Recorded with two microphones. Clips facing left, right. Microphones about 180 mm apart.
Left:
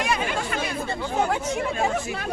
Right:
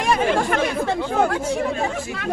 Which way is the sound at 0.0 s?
50° right (ahead or behind).